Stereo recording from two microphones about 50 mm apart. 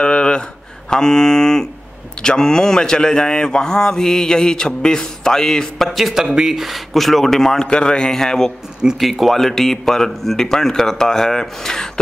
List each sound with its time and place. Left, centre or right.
0.0 s a sound: centre
0.8 s a man's voice: centre
5.9 s a man's voice: centre
9.0 s a man's voice: centre